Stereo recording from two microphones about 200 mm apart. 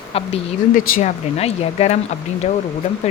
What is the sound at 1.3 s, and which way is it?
Speech, 30° left (ahead or behind).